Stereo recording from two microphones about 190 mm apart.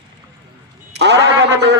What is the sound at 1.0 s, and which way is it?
Speech, 60° right (ahead or behind).